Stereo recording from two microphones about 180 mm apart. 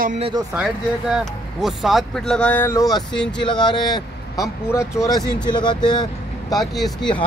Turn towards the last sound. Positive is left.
turn(degrees=0)  # may be behind; listen again after turning